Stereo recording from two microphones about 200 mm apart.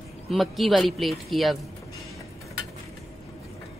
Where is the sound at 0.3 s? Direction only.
Centre (ahead or behind).